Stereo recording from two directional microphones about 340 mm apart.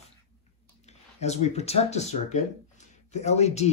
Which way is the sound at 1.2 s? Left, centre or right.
Centre.